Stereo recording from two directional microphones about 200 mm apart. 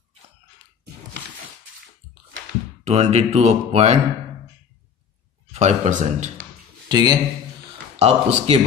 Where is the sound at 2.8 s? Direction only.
35° right (ahead or behind).